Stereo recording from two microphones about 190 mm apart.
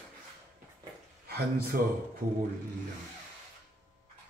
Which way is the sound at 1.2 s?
55° right (ahead or behind).